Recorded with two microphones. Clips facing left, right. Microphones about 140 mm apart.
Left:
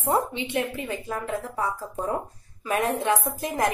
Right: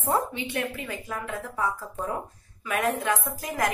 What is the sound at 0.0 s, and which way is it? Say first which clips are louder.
A woman's voice: left 2 dB; 20° left (ahead or behind).